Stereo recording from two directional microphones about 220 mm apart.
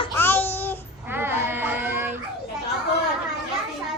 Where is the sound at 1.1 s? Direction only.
10° right (ahead or behind).